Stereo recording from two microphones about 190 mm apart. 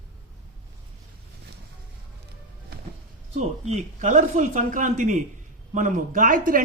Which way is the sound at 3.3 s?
35° right (ahead or behind).